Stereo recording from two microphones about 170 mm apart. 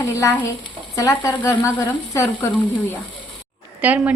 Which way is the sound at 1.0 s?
20° left (ahead or behind).